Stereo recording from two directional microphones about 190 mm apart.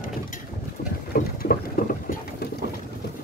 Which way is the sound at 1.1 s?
50° left (ahead or behind).